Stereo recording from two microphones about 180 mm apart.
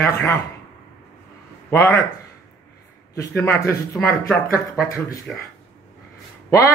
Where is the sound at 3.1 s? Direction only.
15° left (ahead or behind).